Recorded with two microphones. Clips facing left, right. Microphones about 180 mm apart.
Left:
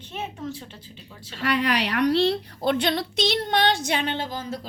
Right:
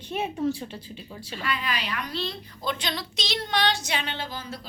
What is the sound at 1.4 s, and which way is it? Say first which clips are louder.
A woman's voice: left 8 dB; 75° left (ahead or behind).